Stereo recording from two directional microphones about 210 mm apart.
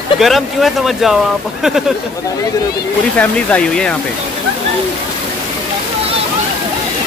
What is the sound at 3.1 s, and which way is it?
Speech, 5° left (ahead or behind).